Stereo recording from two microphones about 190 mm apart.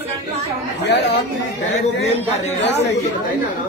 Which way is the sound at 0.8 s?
65° left (ahead or behind).